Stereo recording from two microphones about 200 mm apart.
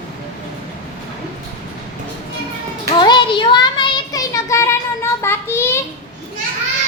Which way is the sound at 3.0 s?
25° left (ahead or behind).